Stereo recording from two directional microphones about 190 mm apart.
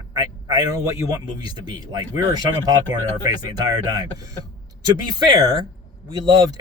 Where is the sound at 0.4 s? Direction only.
20° right (ahead or behind).